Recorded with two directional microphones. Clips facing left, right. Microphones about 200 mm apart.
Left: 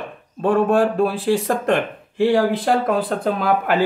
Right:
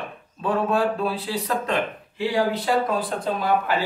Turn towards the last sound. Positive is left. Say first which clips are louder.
# left 3 dB
turn(degrees=60)  # may be behind; listen again after turning